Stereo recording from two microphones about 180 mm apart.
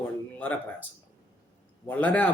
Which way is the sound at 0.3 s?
10° left (ahead or behind).